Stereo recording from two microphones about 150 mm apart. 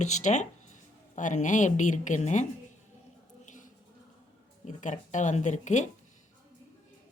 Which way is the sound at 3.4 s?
55° left (ahead or behind).